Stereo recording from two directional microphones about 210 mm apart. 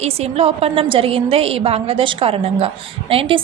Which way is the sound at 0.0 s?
30° right (ahead or behind).